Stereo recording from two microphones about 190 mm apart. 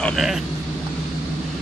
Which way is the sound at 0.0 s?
Centre (ahead or behind).